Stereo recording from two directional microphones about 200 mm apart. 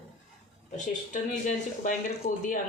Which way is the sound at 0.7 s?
40° left (ahead or behind).